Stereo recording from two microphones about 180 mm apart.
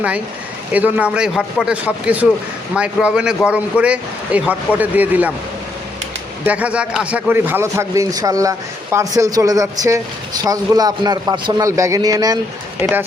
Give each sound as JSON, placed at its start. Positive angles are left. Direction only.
{"t": 0.7, "sound": "a man's voice", "side_deg": -10}
{"t": 6.4, "sound": "a man's voice", "side_deg": -10}